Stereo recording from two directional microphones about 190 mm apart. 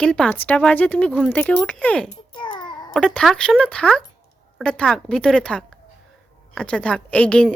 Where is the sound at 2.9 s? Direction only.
5° left (ahead or behind).